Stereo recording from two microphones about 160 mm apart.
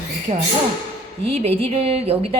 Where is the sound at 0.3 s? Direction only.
45° right (ahead or behind).